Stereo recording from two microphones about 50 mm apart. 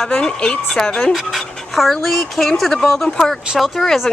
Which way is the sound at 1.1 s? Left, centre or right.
Centre.